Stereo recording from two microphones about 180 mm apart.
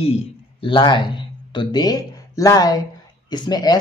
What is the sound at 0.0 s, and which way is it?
Speech, 30° left (ahead or behind).